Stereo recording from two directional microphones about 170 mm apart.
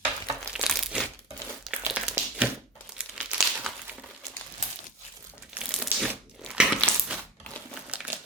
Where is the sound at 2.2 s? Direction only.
10° right (ahead or behind).